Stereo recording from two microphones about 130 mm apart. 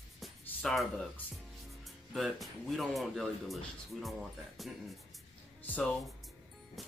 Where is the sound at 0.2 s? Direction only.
Centre (ahead or behind).